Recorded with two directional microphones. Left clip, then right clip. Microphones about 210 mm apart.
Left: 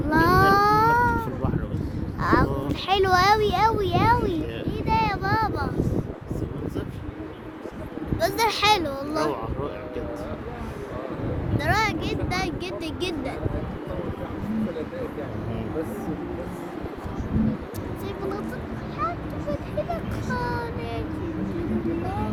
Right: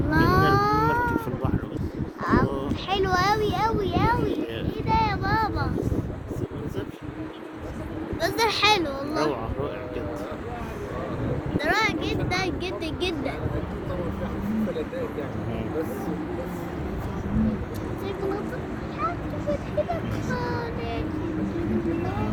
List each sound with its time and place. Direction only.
0.1 s baby cry: 45° left (ahead or behind)
2.2 s a sound: 45° left (ahead or behind)
8.2 s a sound: 30° left (ahead or behind)
11.5 s vehicle: 30° left (ahead or behind)
12.0 s speech: 25° left (ahead or behind)
20.3 s child singing: 30° left (ahead or behind)